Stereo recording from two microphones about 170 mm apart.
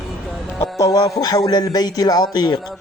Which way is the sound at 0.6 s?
20° left (ahead or behind).